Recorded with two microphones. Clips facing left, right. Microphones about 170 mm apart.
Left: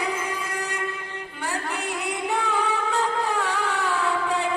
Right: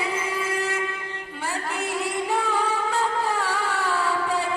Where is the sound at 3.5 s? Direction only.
Centre (ahead or behind).